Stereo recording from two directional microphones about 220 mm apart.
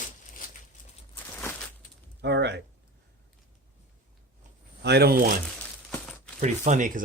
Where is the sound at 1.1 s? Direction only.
10° left (ahead or behind).